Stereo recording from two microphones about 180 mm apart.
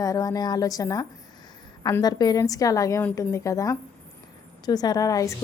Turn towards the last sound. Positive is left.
turn(degrees=20)  # may be behind; listen again after turning